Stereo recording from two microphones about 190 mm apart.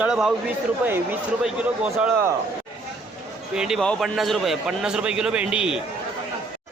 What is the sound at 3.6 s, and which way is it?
Speech, centre (ahead or behind).